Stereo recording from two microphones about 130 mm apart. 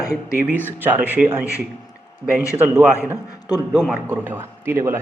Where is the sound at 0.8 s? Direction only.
15° right (ahead or behind).